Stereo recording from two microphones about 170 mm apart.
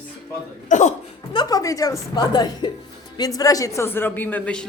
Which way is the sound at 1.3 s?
20° left (ahead or behind).